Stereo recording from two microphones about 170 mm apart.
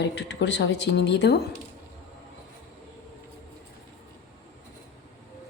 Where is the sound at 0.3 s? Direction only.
90° left.